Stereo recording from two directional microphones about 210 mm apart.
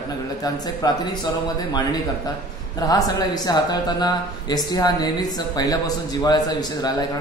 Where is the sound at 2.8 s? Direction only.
15° left (ahead or behind).